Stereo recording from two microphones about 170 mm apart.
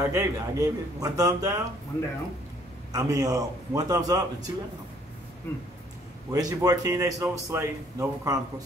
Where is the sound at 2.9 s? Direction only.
20° right (ahead or behind).